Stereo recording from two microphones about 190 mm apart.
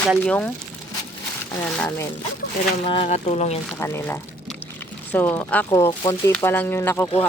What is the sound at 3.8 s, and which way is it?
Speech, 10° left (ahead or behind).